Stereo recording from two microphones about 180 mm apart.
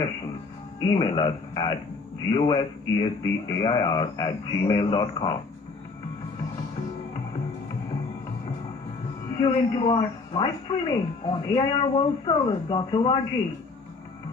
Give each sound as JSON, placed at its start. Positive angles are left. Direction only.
{"t": 0.8, "sound": "speech", "side_deg": 25}
{"t": 9.4, "sound": "speech", "side_deg": 25}